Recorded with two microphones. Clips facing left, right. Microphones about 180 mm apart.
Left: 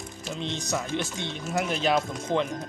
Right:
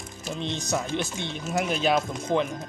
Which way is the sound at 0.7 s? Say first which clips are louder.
Right 2 dB; 20° right (ahead or behind).